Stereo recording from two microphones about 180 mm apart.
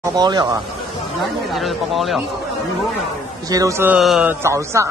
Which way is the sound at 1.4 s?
Centre (ahead or behind).